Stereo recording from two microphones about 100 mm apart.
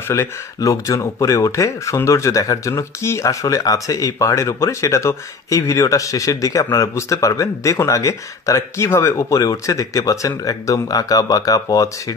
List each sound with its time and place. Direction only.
0.1 s speech: 30° left (ahead or behind)